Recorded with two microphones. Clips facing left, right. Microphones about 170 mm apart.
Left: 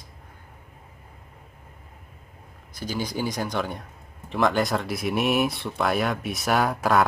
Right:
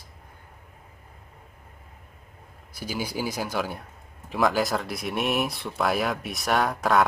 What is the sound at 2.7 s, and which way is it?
A man's voice, 10° right (ahead or behind).